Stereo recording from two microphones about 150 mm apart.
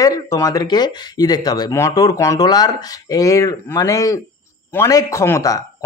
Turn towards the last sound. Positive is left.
turn(degrees=20)  # may be behind; listen again after turning